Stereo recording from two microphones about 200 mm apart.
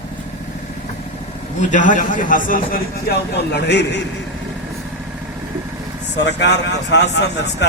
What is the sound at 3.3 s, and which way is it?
Speech, 60° left (ahead or behind).